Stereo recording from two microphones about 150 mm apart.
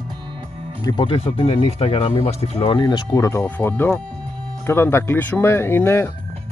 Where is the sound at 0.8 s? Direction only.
30° left (ahead or behind).